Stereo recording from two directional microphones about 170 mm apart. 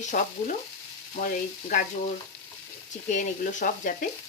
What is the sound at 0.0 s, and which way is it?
Speech, 50° left (ahead or behind).